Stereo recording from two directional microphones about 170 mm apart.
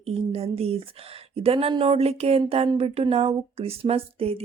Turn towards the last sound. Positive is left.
turn(degrees=-35)  # may be behind; listen again after turning